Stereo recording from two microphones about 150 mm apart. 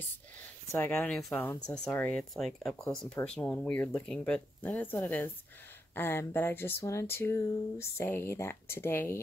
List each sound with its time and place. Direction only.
0.7 s speech: 15° left (ahead or behind)